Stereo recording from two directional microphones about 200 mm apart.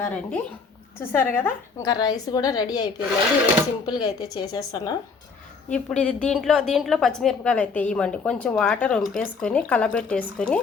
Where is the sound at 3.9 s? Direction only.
20° left (ahead or behind).